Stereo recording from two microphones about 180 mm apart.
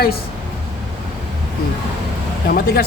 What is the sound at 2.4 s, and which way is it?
Speech, 55° left (ahead or behind).